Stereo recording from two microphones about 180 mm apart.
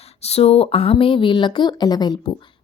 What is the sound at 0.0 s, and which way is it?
A woman's voice, 35° left (ahead or behind).